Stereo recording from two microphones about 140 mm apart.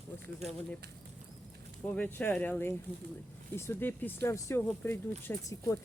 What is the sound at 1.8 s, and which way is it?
Speech, 10° left (ahead or behind).